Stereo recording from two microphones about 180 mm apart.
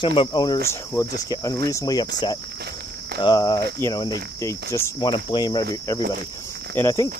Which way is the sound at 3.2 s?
20° left (ahead or behind).